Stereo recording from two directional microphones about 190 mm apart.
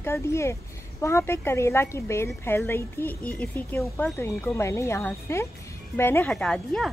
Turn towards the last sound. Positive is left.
turn(degrees=5)  # may be behind; listen again after turning